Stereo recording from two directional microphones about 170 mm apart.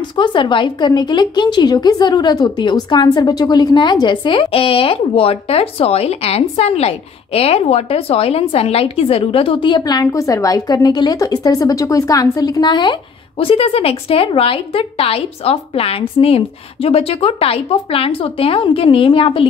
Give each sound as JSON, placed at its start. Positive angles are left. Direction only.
{"t": 0.1, "sound": "a woman's voice", "side_deg": 30}